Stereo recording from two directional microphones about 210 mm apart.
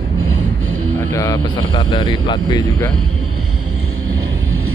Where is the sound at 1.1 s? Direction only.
15° left (ahead or behind).